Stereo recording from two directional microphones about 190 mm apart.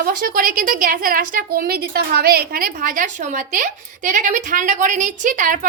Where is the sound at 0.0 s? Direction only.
45° right (ahead or behind).